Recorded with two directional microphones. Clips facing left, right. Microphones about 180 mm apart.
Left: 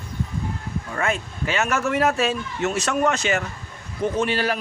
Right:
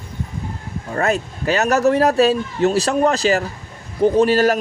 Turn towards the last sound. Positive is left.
turn(degrees=-40)  # may be behind; listen again after turning